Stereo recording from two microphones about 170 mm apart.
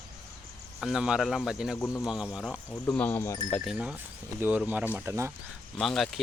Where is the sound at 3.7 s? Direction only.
5° right (ahead or behind).